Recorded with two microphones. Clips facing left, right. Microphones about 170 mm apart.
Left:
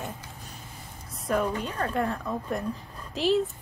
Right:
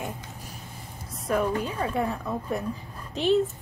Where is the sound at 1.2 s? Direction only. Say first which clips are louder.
Right 2 dB; 5° right (ahead or behind).